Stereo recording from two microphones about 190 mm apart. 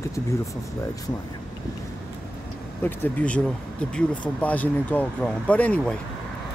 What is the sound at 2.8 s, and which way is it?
Speech, 10° left (ahead or behind).